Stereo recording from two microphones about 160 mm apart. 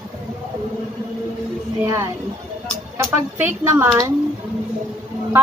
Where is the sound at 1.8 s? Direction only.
20° right (ahead or behind).